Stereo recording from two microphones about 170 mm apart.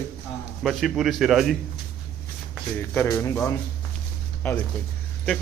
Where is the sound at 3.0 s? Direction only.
15° left (ahead or behind).